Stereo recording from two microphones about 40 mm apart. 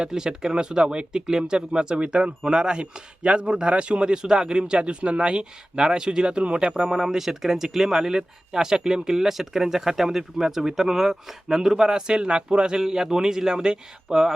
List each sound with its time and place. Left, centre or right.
0.0 s speech: centre
6.9 s speech: centre